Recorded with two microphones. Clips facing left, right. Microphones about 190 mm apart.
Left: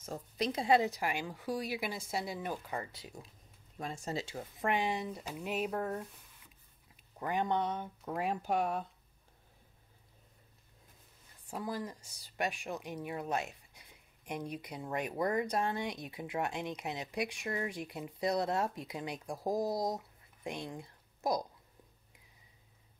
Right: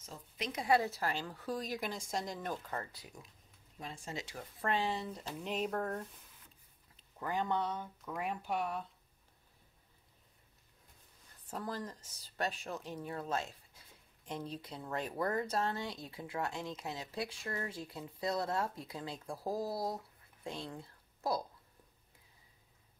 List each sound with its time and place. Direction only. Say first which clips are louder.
0.4 s speech: left 3 dB; 30° left (ahead or behind); by 2.9 s 10° left (ahead or behind)
2.9 s speech: left 4 dB; 25° left (ahead or behind)
3.7 s speech: left 6 dB; 45° left (ahead or behind); by 6.0 s 5° left (ahead or behind)
7.0 s speech: left 2 dB; 15° left (ahead or behind)
8.1 s speech: left 4 dB; 35° left (ahead or behind)
11.4 s a woman's voice: left 2 dB; 10° left (ahead or behind)